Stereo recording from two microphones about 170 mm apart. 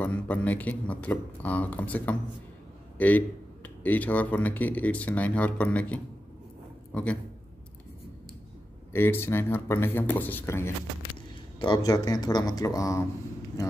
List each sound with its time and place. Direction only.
0.0 s a man's voice: 10° left (ahead or behind)
8.9 s speech: 15° left (ahead or behind)